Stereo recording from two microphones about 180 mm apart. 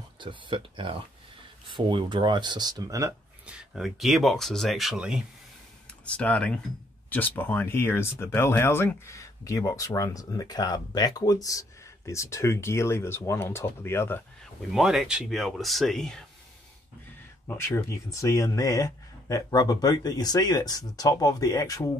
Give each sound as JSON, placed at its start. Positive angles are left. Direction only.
{"t": 0.2, "sound": "speech", "side_deg": -25}
{"t": 3.4, "sound": "speech", "side_deg": -5}
{"t": 6.0, "sound": "speech", "side_deg": 5}
{"t": 14.7, "sound": "speech", "side_deg": -5}
{"t": 17.5, "sound": "speech", "side_deg": 15}